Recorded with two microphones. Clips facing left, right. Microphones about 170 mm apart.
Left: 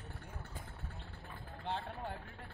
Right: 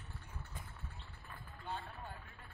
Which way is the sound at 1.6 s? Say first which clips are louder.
Left 5 dB; 75° left (ahead or behind).